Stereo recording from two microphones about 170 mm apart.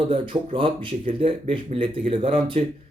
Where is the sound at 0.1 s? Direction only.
30° right (ahead or behind).